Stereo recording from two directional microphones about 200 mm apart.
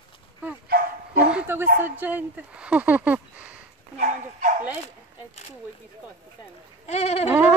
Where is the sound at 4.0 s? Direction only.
40° right (ahead or behind).